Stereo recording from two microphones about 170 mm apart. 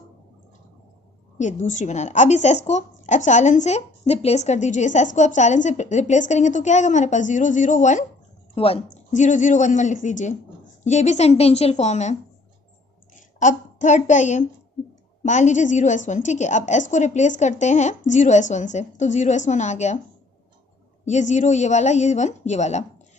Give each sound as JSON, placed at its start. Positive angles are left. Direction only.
{"t": 1.4, "sound": "a woman's voice", "side_deg": 45}
{"t": 8.5, "sound": "a woman's voice", "side_deg": 35}
{"t": 8.9, "sound": "a woman's voice", "side_deg": 45}
{"t": 21.0, "sound": "a woman's voice", "side_deg": 45}